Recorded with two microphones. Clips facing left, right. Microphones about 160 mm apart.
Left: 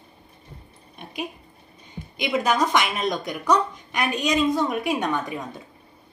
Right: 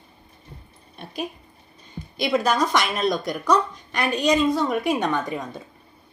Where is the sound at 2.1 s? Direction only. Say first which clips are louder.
Right 1 dB; 15° left (ahead or behind).